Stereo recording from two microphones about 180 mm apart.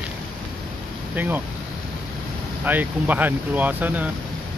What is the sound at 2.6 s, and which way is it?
Speech, 10° right (ahead or behind).